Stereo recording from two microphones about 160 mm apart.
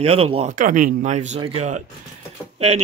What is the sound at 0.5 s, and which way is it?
Speech, 55° right (ahead or behind).